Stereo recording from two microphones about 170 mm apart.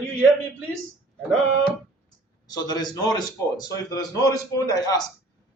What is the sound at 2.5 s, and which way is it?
Speech, 25° left (ahead or behind).